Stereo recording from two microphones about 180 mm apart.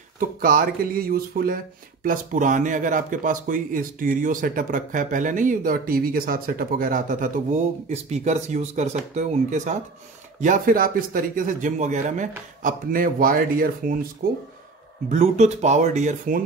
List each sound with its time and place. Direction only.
0.2 s speech: 50° right (ahead or behind)
15.0 s speech: 40° right (ahead or behind)